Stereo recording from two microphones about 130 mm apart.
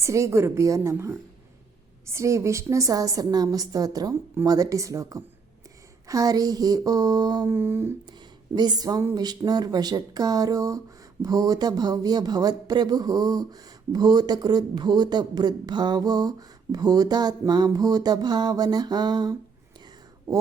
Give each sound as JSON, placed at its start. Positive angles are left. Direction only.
{"t": 0.0, "sound": "a woman's voice", "side_deg": -25}
{"t": 7.4, "sound": "a sound", "side_deg": -15}
{"t": 8.5, "sound": "a woman's voice", "side_deg": -35}